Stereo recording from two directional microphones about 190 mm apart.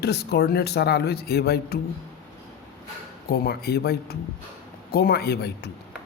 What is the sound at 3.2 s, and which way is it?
Speech, 55° left (ahead or behind).